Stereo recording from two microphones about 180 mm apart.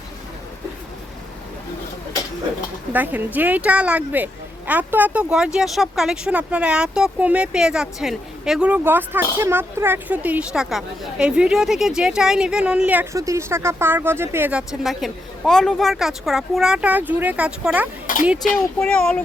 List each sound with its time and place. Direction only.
2.9 s speech: 10° right (ahead or behind)
18.0 s a sound: 50° left (ahead or behind)
18.6 s speech: 10° left (ahead or behind)